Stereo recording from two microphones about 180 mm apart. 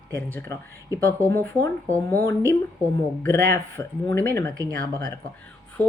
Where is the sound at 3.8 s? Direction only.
20° left (ahead or behind).